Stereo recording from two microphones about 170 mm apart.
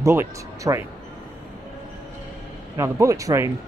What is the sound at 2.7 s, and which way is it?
Speech, 15° right (ahead or behind).